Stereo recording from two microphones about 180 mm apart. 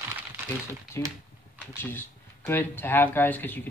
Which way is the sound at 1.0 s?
15° left (ahead or behind).